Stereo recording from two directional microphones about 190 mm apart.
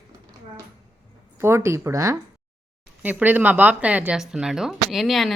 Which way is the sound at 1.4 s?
15° right (ahead or behind).